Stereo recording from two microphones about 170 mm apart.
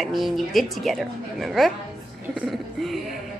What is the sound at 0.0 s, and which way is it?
Speech, centre (ahead or behind).